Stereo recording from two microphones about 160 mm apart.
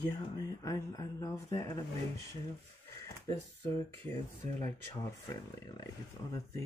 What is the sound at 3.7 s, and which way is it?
Speech, 15° left (ahead or behind).